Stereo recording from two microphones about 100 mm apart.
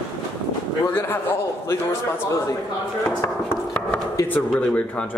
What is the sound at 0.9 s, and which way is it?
Speech, 20° left (ahead or behind).